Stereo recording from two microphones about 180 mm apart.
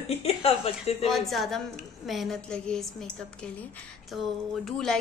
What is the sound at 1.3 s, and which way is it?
A woman's voice, centre (ahead or behind).